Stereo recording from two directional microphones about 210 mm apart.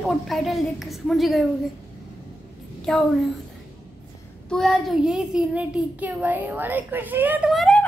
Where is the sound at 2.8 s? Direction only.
Centre (ahead or behind).